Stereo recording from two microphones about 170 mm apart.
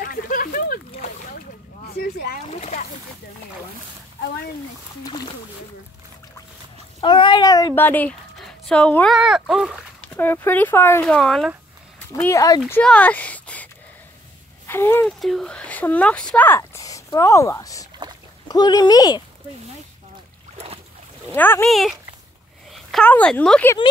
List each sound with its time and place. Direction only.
0.0 s boat: 55° left (ahead or behind)
2.0 s a sound: 65° left (ahead or behind)
2.5 s speech: 45° left (ahead or behind)
7.0 s speech: 30° left (ahead or behind)
7.8 s speech: 10° left (ahead or behind)
10.0 s speech: 10° left (ahead or behind)
11.1 s speech: centre (ahead or behind)
12.2 s speech: 15° left (ahead or behind)
14.7 s speech: 15° left (ahead or behind)
15.1 s speech: centre (ahead or behind); by 19.2 s 20° left (ahead or behind)
20.5 s boat: 35° right (ahead or behind)
21.3 s speech: 10° left (ahead or behind)
21.6 s speech: centre (ahead or behind)